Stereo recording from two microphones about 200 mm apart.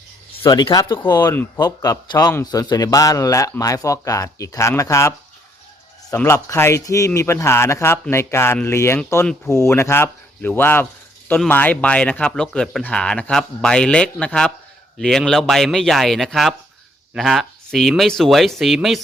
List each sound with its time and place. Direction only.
0.4 s a man's voice: 20° left (ahead or behind); by 18.9 s centre (ahead or behind)